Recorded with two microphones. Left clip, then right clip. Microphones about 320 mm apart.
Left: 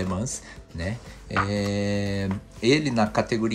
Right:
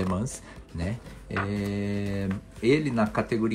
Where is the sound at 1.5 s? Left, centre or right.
Centre.